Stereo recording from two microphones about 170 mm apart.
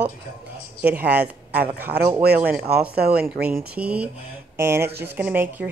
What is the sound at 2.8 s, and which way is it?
Speech, 65° right (ahead or behind).